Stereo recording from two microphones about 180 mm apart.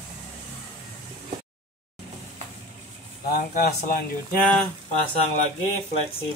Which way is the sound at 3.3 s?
55° left (ahead or behind).